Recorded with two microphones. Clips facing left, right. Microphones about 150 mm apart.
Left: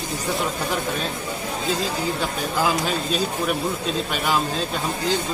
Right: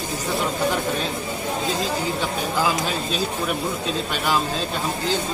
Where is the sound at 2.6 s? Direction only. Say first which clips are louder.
Left 1 dB; 10° right (ahead or behind).